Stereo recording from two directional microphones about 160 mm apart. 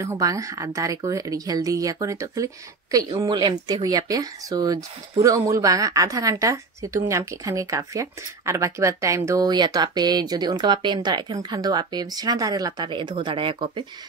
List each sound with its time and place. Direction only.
0.0 s speech: 20° right (ahead or behind)